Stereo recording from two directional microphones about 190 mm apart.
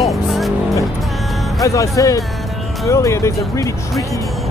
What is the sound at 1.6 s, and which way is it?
Speech, 15° left (ahead or behind).